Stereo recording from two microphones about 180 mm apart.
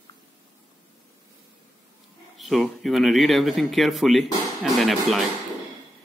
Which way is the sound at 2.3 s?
Centre (ahead or behind).